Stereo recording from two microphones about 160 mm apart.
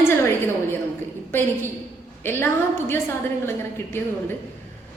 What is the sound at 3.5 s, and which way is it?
Speech, 15° left (ahead or behind).